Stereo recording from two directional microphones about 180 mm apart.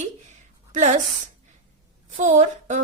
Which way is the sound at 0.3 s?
40° right (ahead or behind).